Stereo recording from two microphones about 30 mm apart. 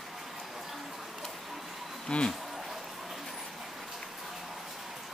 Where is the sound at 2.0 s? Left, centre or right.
Left.